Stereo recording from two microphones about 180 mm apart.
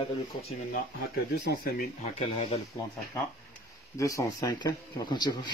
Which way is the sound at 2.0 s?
35° left (ahead or behind).